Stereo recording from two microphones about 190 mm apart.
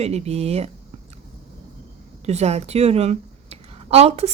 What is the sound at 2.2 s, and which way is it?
Speech, 35° right (ahead or behind).